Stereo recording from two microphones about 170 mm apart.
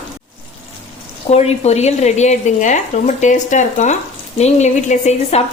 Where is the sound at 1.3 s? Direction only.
40° left (ahead or behind).